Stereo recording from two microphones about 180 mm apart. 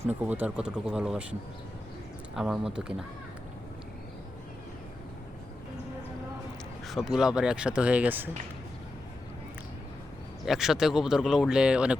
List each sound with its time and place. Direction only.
0.0 s speech: 10° right (ahead or behind)
6.8 s speech: centre (ahead or behind)
10.4 s speech: centre (ahead or behind)